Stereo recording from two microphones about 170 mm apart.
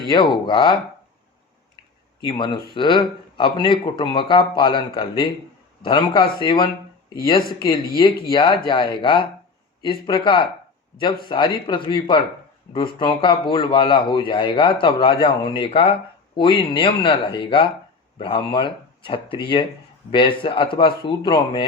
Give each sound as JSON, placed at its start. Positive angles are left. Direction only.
{"t": 0.1, "sound": "a man's voice", "side_deg": 25}
{"t": 2.2, "sound": "a man's voice", "side_deg": 30}